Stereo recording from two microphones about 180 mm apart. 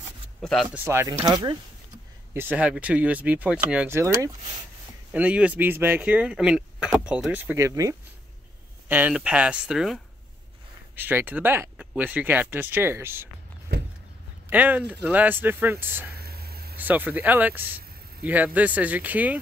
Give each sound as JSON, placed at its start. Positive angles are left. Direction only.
{"t": 0.4, "sound": "speech", "side_deg": 0}
{"t": 0.7, "sound": "speech", "side_deg": -15}
{"t": 2.3, "sound": "speech", "side_deg": -10}
{"t": 11.0, "sound": "speech", "side_deg": -10}
{"t": 14.5, "sound": "speech", "side_deg": -10}
{"t": 16.2, "sound": "a sound", "side_deg": -60}
{"t": 16.7, "sound": "speech", "side_deg": -10}